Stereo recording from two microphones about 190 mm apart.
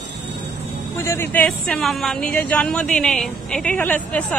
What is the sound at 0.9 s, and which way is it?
Speech, 15° left (ahead or behind).